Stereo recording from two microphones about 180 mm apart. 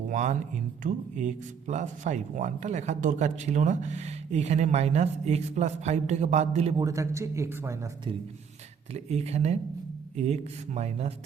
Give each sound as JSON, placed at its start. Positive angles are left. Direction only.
{"t": 0.1, "sound": "speech", "side_deg": -40}
{"t": 6.7, "sound": "a man's voice", "side_deg": -20}
{"t": 8.9, "sound": "speech", "side_deg": -35}